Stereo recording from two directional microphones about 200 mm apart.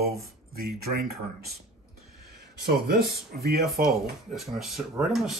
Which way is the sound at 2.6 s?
50° right (ahead or behind).